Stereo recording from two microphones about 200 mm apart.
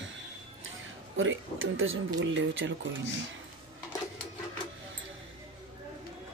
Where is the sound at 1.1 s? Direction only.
80° right.